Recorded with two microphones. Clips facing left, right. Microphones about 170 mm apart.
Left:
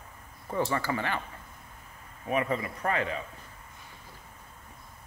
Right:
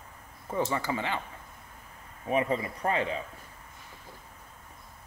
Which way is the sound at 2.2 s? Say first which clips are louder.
Right 1 dB; 25° right (ahead or behind).